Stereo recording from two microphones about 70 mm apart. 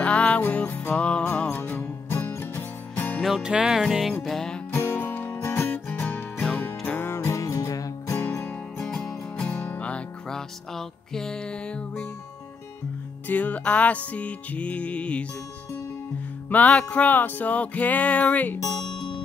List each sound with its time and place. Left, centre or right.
0.0 s music: centre
2.0 s music: left
3.2 s music: centre
4.2 s music: centre
4.7 s music: left
5.7 s music: left
7.2 s music: left
8.1 s music: left
8.7 s music: centre
9.6 s music: left
13.3 s music: left
16.4 s music: left
18.6 s speech: left